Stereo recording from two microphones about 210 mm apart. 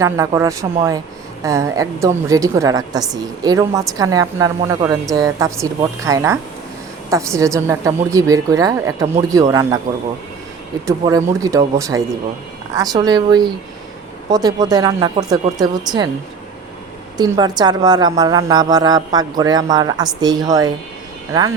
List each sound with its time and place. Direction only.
0.0 s a woman's voice: 15° right (ahead or behind)
17.2 s a woman's voice: 20° right (ahead or behind)